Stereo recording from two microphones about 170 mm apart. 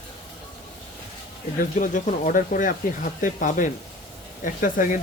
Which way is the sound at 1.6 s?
50° left (ahead or behind).